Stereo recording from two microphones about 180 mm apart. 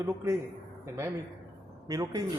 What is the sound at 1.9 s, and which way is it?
Speech, 20° right (ahead or behind).